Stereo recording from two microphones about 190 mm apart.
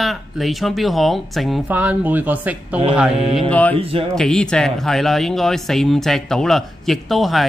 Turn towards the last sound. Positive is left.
turn(degrees=0)  # may be behind; listen again after turning